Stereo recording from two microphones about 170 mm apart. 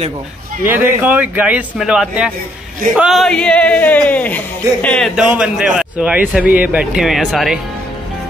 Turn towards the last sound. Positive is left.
turn(degrees=0)  # may be behind; listen again after turning